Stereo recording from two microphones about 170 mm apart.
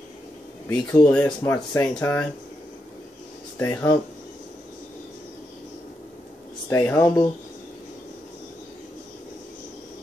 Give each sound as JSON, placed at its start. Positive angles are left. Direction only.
{"t": 0.7, "sound": "speech", "side_deg": 10}
{"t": 3.5, "sound": "speech", "side_deg": 15}
{"t": 6.7, "sound": "speech", "side_deg": 15}